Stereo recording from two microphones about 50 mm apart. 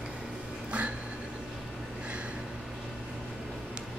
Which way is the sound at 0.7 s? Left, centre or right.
Right.